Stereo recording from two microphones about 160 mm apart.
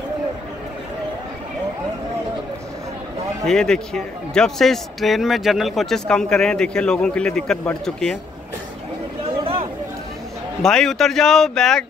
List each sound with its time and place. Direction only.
3.4 s a man's voice: 5° left (ahead or behind)
9.4 s a sound: 35° right (ahead or behind)
10.6 s a man's voice: 5° left (ahead or behind)